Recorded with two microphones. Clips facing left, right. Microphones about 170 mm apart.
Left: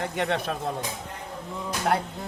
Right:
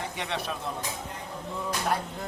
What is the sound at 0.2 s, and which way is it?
Speech, 50° left (ahead or behind).